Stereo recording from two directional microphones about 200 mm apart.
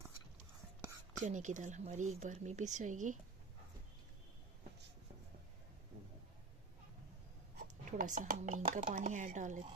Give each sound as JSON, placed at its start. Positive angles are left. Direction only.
{"t": 1.2, "sound": "speech", "side_deg": -35}
{"t": 7.5, "sound": "speech", "side_deg": -40}